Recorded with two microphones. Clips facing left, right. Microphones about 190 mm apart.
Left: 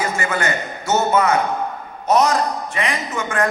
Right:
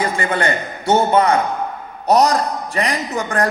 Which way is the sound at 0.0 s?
30° right (ahead or behind).